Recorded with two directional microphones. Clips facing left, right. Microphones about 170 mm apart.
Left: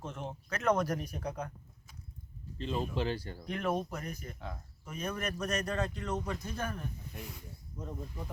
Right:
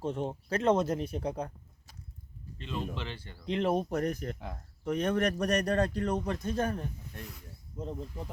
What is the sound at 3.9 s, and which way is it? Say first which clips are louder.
Speech: right 10 dB; 60° right (ahead or behind).